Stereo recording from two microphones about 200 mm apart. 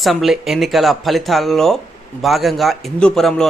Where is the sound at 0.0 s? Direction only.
Centre (ahead or behind).